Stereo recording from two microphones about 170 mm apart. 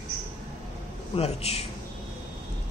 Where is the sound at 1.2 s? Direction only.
35° left (ahead or behind).